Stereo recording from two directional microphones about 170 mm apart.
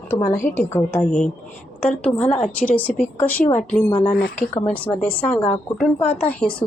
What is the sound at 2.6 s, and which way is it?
Speech, 10° left (ahead or behind).